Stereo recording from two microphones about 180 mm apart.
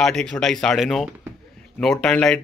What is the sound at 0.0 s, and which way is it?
Speech, 5° left (ahead or behind).